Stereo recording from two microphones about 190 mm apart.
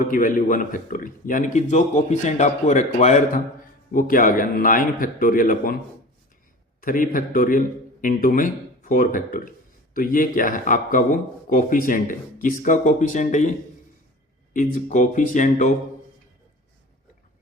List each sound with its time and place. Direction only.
0.1 s speech: 45° left (ahead or behind)
6.8 s speech: 45° left (ahead or behind)
14.5 s speech: 45° left (ahead or behind)